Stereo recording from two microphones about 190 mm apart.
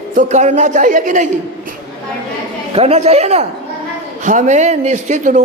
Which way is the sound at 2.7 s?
35° right (ahead or behind).